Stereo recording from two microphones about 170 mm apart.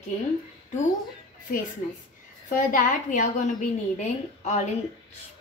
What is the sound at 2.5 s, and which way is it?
A woman's voice, 50° left (ahead or behind).